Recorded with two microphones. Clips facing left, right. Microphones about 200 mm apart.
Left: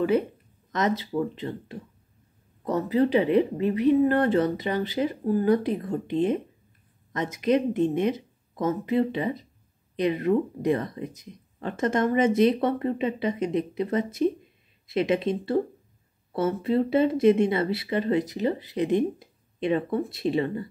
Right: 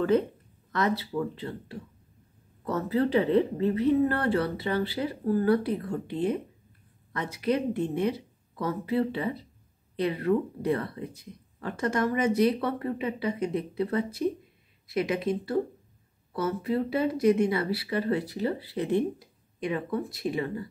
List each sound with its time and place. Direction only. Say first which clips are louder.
0.7 s a woman's voice: left 2 dB; 20° left (ahead or behind)